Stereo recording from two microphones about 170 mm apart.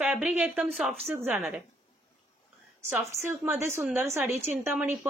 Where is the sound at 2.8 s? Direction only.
15° right (ahead or behind).